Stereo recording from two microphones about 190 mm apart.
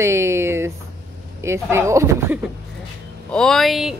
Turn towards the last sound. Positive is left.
turn(degrees=0)  # may be behind; listen again after turning